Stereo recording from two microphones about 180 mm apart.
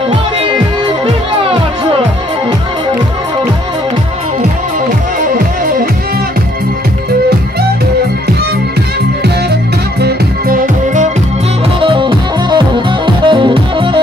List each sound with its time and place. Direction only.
10.0 s music: 50° right (ahead or behind)
11.8 s music: 30° right (ahead or behind)